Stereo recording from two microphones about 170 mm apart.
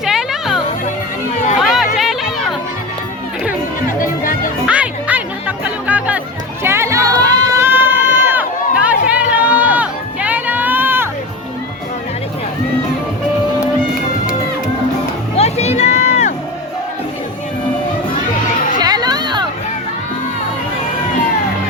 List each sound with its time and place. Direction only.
0.0 s music: centre (ahead or behind)
1.6 s music: centre (ahead or behind)
4.6 s music: 10° right (ahead or behind)
15.4 s music: 40° left (ahead or behind)
18.8 s music: 25° right (ahead or behind)